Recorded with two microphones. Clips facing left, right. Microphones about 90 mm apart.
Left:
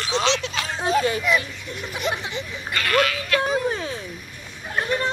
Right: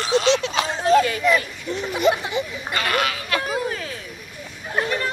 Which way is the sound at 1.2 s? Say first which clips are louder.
Right 3 dB; 5° left (ahead or behind).